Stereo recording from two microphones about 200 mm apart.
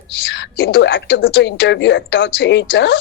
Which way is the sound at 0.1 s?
60° left (ahead or behind).